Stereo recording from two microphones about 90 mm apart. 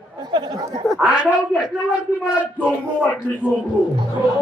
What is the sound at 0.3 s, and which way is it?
Speech, 55° right (ahead or behind).